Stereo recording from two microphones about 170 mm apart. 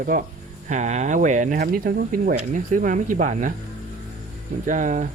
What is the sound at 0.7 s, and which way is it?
Speech, 45° right (ahead or behind).